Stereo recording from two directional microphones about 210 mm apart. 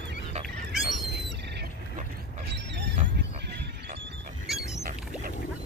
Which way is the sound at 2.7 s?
55° right (ahead or behind).